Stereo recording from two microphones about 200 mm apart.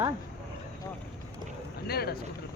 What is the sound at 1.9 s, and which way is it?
Speech, 50° left (ahead or behind).